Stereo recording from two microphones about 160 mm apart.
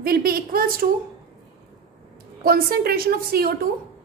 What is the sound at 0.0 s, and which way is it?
Speech, 70° right (ahead or behind).